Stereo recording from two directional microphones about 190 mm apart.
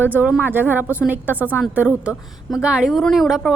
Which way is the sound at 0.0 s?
10° right (ahead or behind).